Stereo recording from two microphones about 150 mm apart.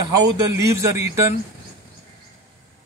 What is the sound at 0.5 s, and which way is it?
Speech, 20° right (ahead or behind).